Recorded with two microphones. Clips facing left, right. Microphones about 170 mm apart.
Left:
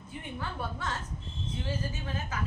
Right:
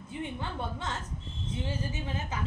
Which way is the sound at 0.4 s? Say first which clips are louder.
Even; 20° right (ahead or behind).